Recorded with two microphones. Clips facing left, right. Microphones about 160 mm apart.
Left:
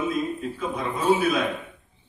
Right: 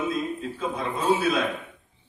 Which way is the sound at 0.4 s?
30° right (ahead or behind).